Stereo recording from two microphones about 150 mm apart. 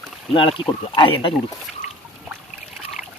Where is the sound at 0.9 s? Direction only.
35° left (ahead or behind).